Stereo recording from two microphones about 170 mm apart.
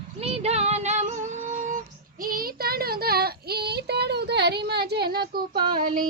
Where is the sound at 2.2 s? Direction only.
60° right (ahead or behind).